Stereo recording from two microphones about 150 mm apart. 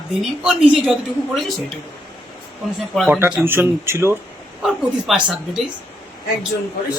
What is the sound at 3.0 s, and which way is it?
A man's voice, 10° right (ahead or behind).